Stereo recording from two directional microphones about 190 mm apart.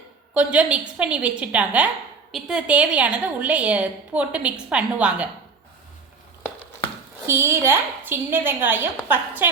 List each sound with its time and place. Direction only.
0.3 s a woman's voice: 5° right (ahead or behind)
7.3 s a woman's voice: 15° right (ahead or behind)